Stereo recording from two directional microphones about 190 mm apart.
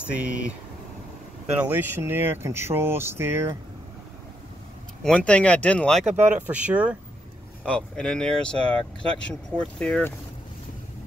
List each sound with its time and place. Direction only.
0.0 s speech: 5° right (ahead or behind)
1.6 s speech: 10° right (ahead or behind)
5.0 s speech: 5° left (ahead or behind)
6.1 s speech: 10° right (ahead or behind)
7.6 s speech: 5° left (ahead or behind)